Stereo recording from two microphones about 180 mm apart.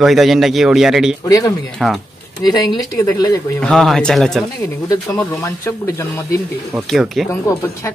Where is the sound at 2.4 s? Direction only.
20° left (ahead or behind).